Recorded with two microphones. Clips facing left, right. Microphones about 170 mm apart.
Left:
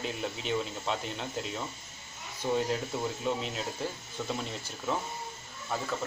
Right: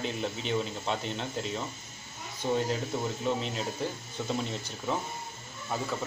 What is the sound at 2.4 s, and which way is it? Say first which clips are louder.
Speech: right 1 dB; 25° right (ahead or behind).